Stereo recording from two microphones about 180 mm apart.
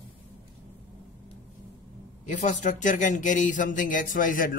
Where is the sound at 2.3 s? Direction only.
45° left (ahead or behind).